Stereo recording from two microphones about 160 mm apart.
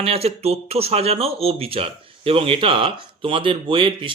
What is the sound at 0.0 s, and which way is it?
Speech, 40° right (ahead or behind).